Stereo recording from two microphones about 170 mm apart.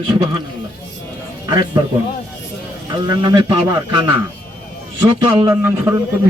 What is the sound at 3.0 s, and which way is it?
Speech, 20° right (ahead or behind).